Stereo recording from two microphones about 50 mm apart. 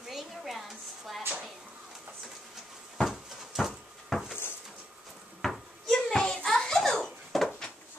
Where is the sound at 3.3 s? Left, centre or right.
Centre.